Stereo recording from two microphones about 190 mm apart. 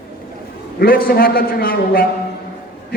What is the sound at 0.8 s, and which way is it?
A man's voice, 50° left (ahead or behind).